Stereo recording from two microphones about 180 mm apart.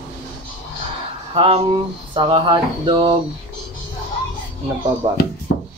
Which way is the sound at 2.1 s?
30° right (ahead or behind).